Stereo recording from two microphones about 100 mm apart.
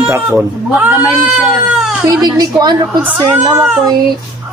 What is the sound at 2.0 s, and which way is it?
Speech, 45° right (ahead or behind).